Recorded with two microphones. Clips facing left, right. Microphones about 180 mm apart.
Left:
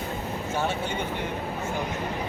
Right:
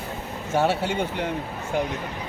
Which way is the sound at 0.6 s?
70° right (ahead or behind).